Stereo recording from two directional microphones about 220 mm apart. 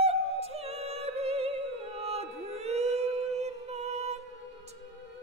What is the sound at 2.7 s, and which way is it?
Music, 30° right (ahead or behind).